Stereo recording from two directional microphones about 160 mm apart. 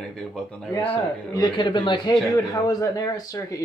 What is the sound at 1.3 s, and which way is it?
Speech, 30° left (ahead or behind).